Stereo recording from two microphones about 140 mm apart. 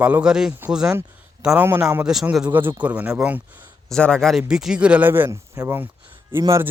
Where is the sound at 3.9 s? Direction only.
5° left (ahead or behind).